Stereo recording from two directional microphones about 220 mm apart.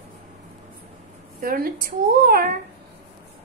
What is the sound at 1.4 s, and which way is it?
Speech, 40° right (ahead or behind).